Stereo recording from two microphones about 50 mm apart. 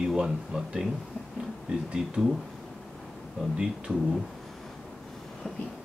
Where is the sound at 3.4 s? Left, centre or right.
Centre.